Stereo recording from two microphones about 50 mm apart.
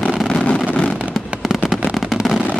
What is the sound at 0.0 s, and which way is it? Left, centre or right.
Vehicle, left.